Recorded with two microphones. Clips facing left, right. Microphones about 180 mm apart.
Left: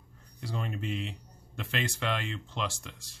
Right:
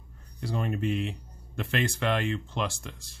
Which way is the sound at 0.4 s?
55° right (ahead or behind).